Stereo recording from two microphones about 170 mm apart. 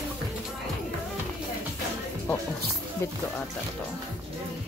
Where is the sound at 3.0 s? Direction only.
15° left (ahead or behind).